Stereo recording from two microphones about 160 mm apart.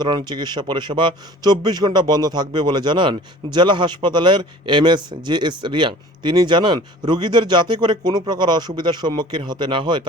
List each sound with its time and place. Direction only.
0.3 s a man's voice: 25° right (ahead or behind)